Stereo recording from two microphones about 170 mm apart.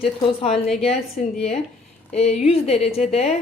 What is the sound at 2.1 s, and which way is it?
A woman's voice, 40° left (ahead or behind).